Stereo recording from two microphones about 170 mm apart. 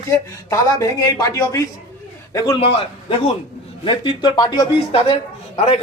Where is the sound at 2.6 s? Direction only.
35° left (ahead or behind).